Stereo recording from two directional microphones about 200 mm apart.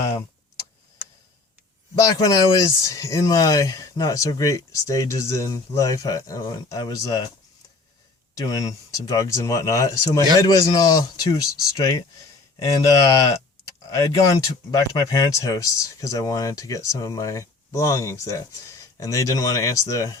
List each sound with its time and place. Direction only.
2.0 s speech: 20° left (ahead or behind)
8.4 s speech: 15° left (ahead or behind)